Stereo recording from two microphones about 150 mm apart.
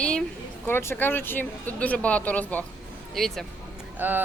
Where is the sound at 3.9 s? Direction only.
10° right (ahead or behind).